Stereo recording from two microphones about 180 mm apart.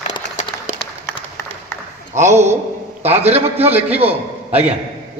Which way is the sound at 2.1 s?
40° right (ahead or behind).